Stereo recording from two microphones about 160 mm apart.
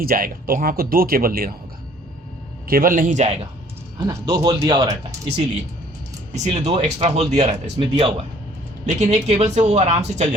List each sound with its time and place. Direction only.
0.0 s speech: 65° right (ahead or behind)
2.6 s speech: 65° right (ahead or behind)
4.0 s speech: 25° right (ahead or behind)
6.3 s speech: 45° right (ahead or behind)